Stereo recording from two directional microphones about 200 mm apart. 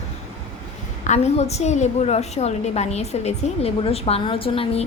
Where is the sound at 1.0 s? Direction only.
35° left (ahead or behind).